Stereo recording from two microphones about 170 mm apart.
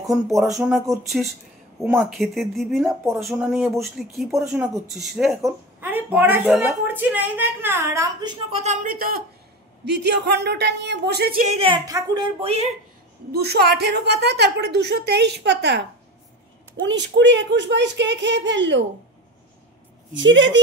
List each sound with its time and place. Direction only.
0.1 s speech: centre (ahead or behind)
5.4 s a woman's voice: 10° right (ahead or behind)
8.5 s speech: 50° right (ahead or behind)
9.8 s speech: 85° right; by 11.4 s 70° right (ahead or behind)
11.4 s a woman's voice: 35° right (ahead or behind)
11.8 s speech: 20° right (ahead or behind)
13.3 s a woman's voice: 70° right (ahead or behind); by 18.9 s 90° right
20.2 s speech: 90° right